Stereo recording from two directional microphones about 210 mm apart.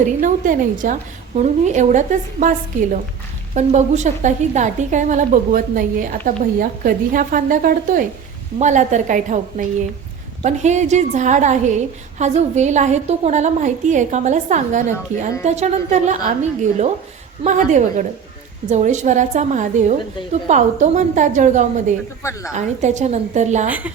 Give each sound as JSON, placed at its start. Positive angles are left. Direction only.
{"t": 0.0, "sound": "a woman's voice", "side_deg": -40}
{"t": 22.2, "sound": "a woman's voice", "side_deg": 15}
{"t": 22.5, "sound": "a woman's voice", "side_deg": -35}
{"t": 23.6, "sound": "a woman's voice", "side_deg": -5}